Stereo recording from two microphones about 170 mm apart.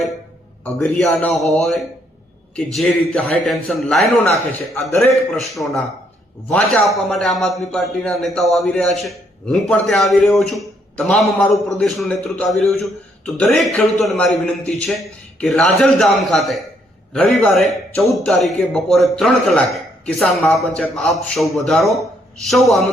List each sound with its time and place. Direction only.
0.6 s a man's voice: 5° left (ahead or behind)
5.4 s a man's voice: centre (ahead or behind)